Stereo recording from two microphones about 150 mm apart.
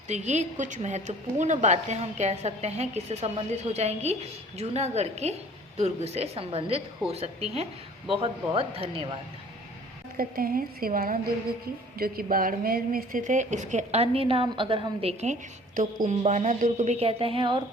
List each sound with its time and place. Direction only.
0.1 s a woman's voice: 50° right (ahead or behind)
10.2 s a woman's voice: 75° right (ahead or behind); by 15.1 s 35° right (ahead or behind)
15.2 s a woman's voice: 55° right (ahead or behind); by 17.6 s 35° right (ahead or behind)